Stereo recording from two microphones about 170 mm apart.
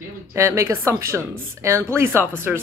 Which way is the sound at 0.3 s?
15° right (ahead or behind).